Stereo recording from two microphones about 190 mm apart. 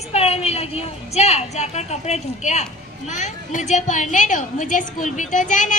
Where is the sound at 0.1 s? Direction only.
35° left (ahead or behind).